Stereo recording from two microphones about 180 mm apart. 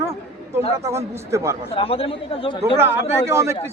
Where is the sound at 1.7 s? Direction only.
30° left (ahead or behind).